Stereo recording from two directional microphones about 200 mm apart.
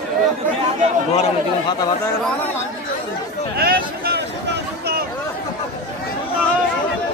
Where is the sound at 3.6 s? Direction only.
50° right (ahead or behind).